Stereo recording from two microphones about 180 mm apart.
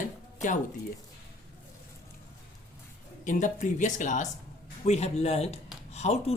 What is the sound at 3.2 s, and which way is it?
Speech, 45° left (ahead or behind).